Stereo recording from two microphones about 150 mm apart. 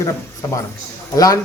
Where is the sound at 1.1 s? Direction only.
25° left (ahead or behind).